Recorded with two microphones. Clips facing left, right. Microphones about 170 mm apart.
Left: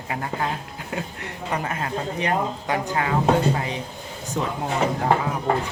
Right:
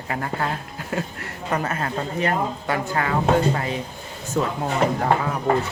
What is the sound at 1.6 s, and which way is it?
Speech, 15° left (ahead or behind).